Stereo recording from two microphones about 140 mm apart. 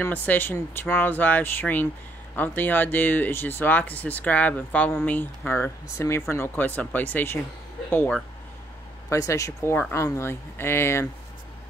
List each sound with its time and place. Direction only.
0.0 s speech: 10° left (ahead or behind)